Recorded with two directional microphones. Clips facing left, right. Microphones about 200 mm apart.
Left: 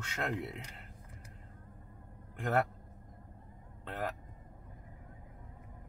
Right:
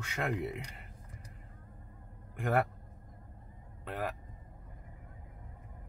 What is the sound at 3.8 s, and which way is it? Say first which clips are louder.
Speech: right 1 dB; 10° right (ahead or behind).